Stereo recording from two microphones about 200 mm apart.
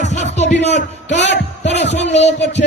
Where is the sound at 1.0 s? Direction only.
60° left (ahead or behind).